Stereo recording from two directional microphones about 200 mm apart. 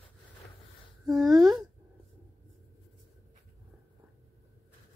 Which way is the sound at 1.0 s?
Centre (ahead or behind).